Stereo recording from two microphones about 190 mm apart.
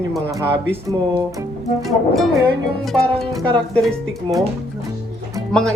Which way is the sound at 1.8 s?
Centre (ahead or behind).